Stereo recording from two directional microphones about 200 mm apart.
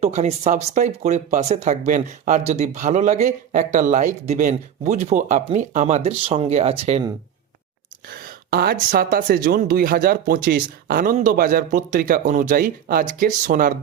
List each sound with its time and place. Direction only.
0.0 s speech: 35° right (ahead or behind)
8.4 s speech: 50° right (ahead or behind)